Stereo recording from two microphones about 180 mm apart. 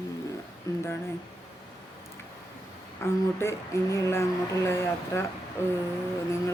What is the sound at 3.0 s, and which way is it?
Speech, 15° left (ahead or behind).